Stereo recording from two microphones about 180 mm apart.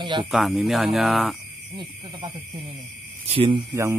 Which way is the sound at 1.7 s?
25° right (ahead or behind).